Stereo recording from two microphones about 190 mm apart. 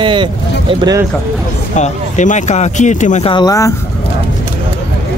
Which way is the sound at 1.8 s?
40° left (ahead or behind).